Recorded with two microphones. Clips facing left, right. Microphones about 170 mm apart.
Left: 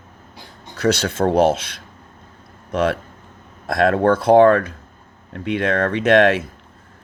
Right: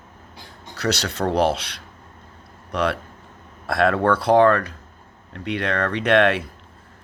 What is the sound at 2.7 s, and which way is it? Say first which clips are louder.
Speech: left 4 dB; 45° left (ahead or behind).